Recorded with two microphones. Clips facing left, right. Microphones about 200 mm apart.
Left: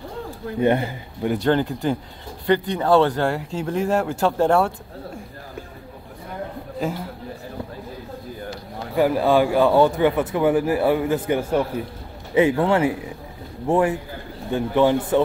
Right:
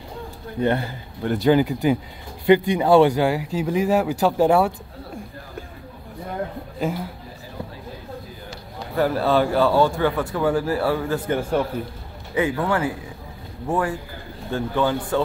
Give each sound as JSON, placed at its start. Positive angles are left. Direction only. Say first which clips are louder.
{"t": 0.6, "sound": "speech", "louder": "left 2 dB", "side_deg": 15}
{"t": 1.3, "sound": "speech", "louder": "right 3 dB", "side_deg": -5}
{"t": 6.8, "sound": "a man's voice", "louder": "right 1 dB", "side_deg": 0}
{"t": 8.9, "sound": "speech", "louder": "left 2 dB", "side_deg": 15}
{"t": 12.4, "sound": "speech", "louder": "left 4 dB", "side_deg": 25}